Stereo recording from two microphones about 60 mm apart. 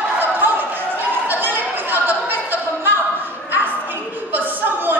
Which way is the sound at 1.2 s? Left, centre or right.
Right.